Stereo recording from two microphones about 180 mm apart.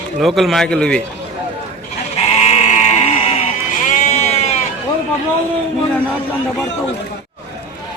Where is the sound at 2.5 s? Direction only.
40° left (ahead or behind).